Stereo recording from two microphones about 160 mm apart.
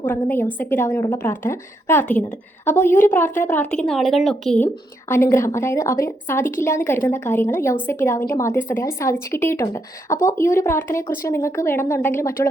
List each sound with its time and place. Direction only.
0.0 s a woman's voice: 10° left (ahead or behind)
4.6 s a woman's voice: 15° left (ahead or behind)